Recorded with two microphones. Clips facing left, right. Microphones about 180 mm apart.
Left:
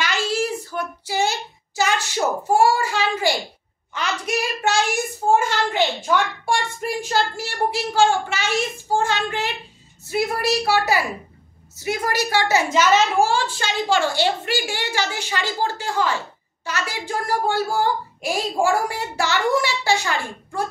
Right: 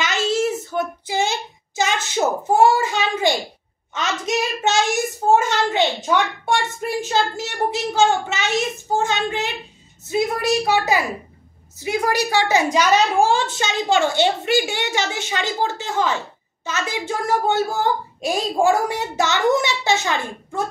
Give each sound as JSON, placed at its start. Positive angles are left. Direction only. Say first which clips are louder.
{"t": 0.0, "sound": "child singing", "louder": "right 3 dB", "side_deg": -20}
{"t": 1.8, "sound": "a child's voice", "louder": "right 1 dB", "side_deg": -20}